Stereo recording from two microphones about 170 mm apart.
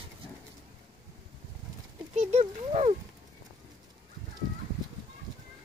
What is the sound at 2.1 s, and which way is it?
Speech, 40° right (ahead or behind).